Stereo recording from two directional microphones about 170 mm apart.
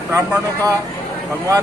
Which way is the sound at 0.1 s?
15° right (ahead or behind).